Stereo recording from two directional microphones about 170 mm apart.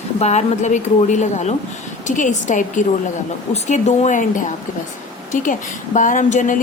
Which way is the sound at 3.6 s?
45° left (ahead or behind).